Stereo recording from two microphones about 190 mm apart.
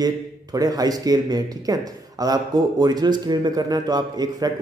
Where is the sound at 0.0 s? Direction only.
20° right (ahead or behind).